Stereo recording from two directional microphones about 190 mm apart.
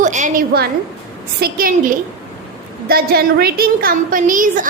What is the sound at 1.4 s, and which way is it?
A woman's voice, 50° right (ahead or behind).